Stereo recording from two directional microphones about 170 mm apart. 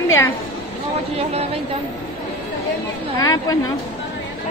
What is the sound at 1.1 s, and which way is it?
Speech, 35° right (ahead or behind).